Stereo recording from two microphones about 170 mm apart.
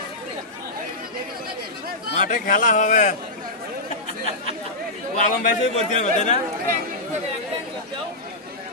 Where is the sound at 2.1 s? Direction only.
50° left (ahead or behind).